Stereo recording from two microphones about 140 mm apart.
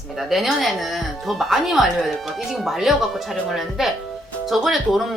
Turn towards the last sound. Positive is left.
turn(degrees=0)  # may be behind; listen again after turning